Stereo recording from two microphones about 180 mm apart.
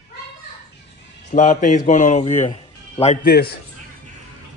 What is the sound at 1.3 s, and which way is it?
Speech, 40° left (ahead or behind).